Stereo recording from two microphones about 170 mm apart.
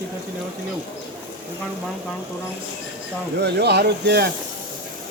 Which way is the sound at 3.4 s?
75° right (ahead or behind).